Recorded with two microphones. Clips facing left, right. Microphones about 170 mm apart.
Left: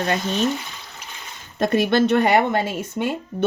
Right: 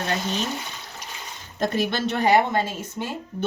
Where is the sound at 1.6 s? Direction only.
55° left (ahead or behind).